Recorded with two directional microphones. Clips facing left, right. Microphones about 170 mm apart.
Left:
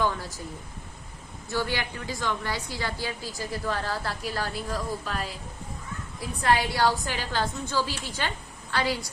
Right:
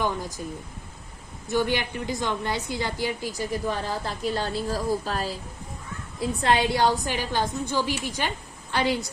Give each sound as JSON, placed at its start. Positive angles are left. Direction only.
{"t": 0.0, "sound": "speech", "side_deg": -15}
{"t": 1.5, "sound": "a woman's voice", "side_deg": -20}
{"t": 6.1, "sound": "a woman's voice", "side_deg": -25}